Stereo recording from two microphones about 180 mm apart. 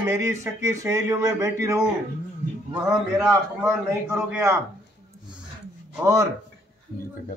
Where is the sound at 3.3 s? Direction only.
15° right (ahead or behind).